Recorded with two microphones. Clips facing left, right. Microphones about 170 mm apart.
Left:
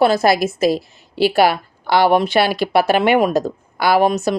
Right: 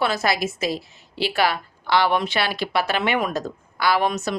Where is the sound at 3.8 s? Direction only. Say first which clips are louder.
Left 6 dB; 50° left (ahead or behind).